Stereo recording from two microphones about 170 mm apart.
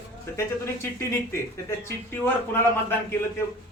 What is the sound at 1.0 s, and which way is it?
A man's voice, 15° left (ahead or behind).